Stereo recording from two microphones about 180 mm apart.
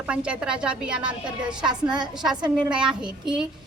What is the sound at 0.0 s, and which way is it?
A woman's voice, 5° right (ahead or behind).